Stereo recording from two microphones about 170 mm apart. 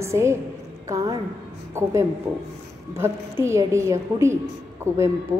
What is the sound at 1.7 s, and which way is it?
A woman's voice, 15° right (ahead or behind).